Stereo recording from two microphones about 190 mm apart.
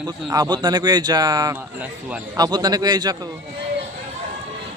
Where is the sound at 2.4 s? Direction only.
20° right (ahead or behind).